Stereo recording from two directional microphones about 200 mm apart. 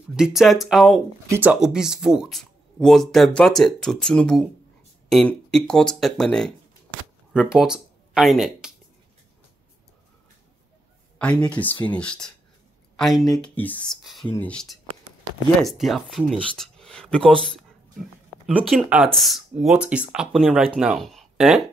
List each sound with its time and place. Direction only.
0.1 s speech: centre (ahead or behind)
11.1 s speech: 5° left (ahead or behind)